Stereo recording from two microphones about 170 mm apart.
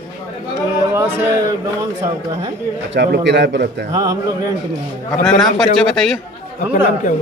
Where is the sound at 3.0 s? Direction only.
85° right.